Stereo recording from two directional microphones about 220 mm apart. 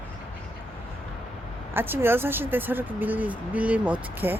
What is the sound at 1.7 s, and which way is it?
Speech, 10° right (ahead or behind).